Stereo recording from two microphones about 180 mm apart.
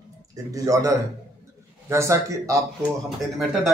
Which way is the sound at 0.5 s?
20° right (ahead or behind).